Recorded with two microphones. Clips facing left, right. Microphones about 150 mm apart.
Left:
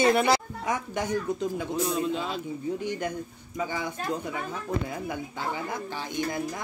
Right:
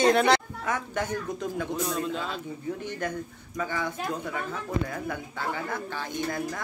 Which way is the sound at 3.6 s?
15° left (ahead or behind).